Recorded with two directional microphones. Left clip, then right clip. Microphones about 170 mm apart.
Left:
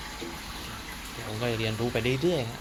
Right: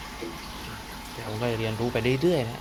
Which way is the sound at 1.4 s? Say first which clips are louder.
Right 1 dB; 5° right (ahead or behind).